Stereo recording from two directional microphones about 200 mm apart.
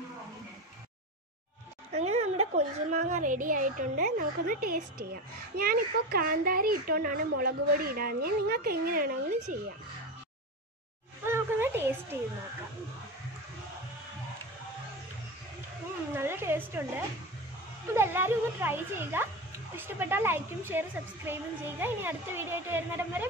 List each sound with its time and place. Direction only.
1.9 s a woman's voice: 35° right (ahead or behind)
11.2 s a sound: 10° right (ahead or behind)
16.1 s a woman's voice: 10° right (ahead or behind)
17.9 s a woman's voice: 10° right (ahead or behind)